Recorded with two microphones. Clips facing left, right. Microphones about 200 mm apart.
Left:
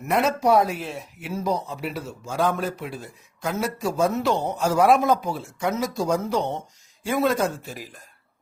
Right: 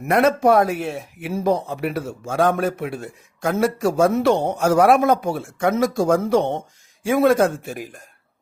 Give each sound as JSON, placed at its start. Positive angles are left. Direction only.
{"t": 0.0, "sound": "speech", "side_deg": -55}
{"t": 4.2, "sound": "speech", "side_deg": -70}
{"t": 4.4, "sound": "speech", "side_deg": -55}